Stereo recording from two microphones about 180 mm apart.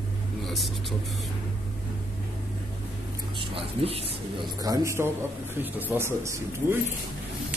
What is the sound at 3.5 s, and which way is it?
A man's voice, 35° right (ahead or behind).